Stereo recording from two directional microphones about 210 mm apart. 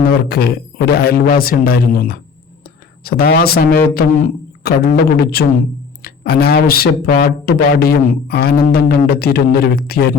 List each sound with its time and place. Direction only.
0.0 s speech: 45° left (ahead or behind)